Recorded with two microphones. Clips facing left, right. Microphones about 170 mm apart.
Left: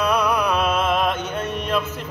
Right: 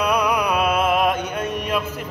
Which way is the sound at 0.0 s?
10° right (ahead or behind).